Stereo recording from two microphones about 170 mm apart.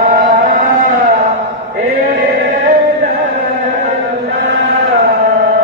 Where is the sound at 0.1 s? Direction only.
55° right (ahead or behind).